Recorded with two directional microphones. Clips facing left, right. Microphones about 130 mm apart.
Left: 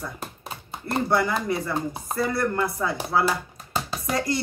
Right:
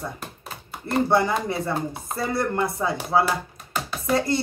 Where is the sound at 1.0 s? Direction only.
25° right (ahead or behind).